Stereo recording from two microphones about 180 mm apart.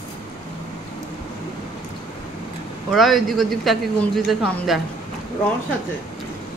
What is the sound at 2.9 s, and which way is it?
A man's voice, centre (ahead or behind).